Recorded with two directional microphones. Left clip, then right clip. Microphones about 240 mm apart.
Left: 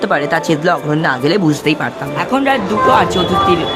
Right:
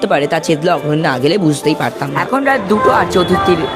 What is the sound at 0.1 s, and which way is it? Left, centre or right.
Speech, centre.